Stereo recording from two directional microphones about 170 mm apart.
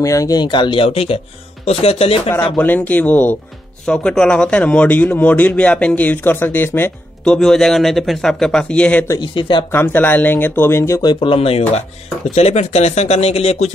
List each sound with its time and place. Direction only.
0.0 s speech: 20° left (ahead or behind)
2.5 s speech: 10° left (ahead or behind)
9.2 s speech: 30° left (ahead or behind)
9.7 s speech: 10° left (ahead or behind); by 13.7 s 40° left (ahead or behind)